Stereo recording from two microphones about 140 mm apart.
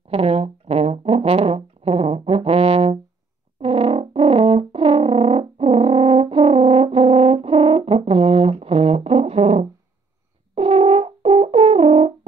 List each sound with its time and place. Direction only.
0.1 s brass instrument: 45° right (ahead or behind)